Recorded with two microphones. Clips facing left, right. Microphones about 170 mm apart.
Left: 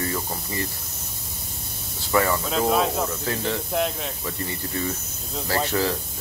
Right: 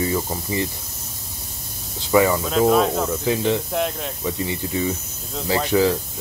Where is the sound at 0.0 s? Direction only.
15° right (ahead or behind).